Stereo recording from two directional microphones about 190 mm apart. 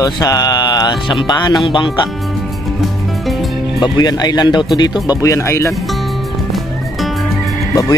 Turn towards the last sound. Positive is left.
turn(degrees=15)  # may be behind; listen again after turning